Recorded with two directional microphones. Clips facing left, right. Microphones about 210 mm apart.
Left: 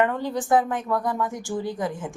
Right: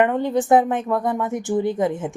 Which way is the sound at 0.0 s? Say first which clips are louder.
Right 5 dB; 20° right (ahead or behind).